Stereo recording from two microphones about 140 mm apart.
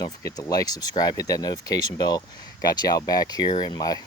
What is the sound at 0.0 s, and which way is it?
Speech, 25° left (ahead or behind).